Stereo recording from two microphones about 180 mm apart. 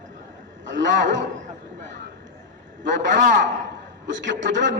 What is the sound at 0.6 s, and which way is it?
Speech, 90° right.